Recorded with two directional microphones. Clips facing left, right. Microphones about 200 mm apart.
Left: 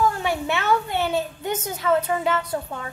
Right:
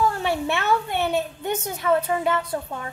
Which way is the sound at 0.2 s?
25° right (ahead or behind).